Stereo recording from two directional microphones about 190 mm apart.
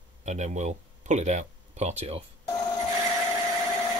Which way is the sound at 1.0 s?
35° right (ahead or behind).